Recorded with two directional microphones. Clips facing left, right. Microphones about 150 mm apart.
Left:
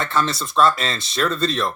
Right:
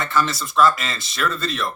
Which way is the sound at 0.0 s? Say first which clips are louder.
Even; 25° left (ahead or behind).